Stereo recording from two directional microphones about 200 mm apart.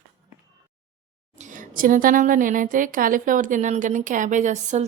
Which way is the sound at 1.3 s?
40° right (ahead or behind).